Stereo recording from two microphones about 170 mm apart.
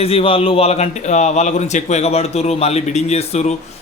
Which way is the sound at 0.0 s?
35° left (ahead or behind).